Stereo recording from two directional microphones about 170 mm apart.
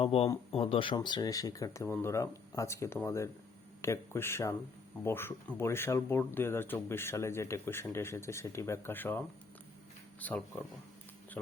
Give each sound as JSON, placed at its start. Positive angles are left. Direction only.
{"t": 0.0, "sound": "speech", "side_deg": 35}